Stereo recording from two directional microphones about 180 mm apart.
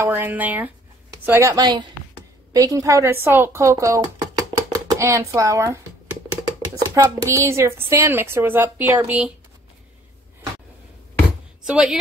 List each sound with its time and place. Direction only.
0.0 s a woman's voice: 10° right (ahead or behind)
6.8 s a woman's voice: 20° right (ahead or behind)
11.6 s speech: 5° right (ahead or behind)